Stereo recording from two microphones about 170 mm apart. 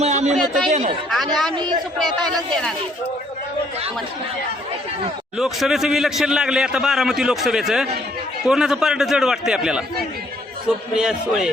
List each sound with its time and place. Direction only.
0.0 s a man's voice: 40° right (ahead or behind)
1.1 s a man's voice: centre (ahead or behind)
1.5 s a man's voice: 25° right (ahead or behind)
5.4 s a man's voice: centre (ahead or behind)
10.9 s a man's voice: 5° right (ahead or behind)